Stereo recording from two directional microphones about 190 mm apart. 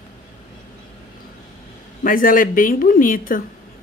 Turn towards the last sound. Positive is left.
turn(degrees=45)  # may be behind; listen again after turning